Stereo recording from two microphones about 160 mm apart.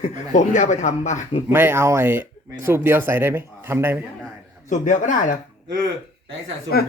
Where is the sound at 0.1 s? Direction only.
50° left (ahead or behind).